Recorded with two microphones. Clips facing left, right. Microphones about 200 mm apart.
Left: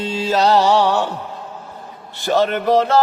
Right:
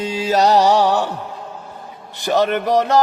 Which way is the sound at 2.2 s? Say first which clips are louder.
Even; 15° right (ahead or behind).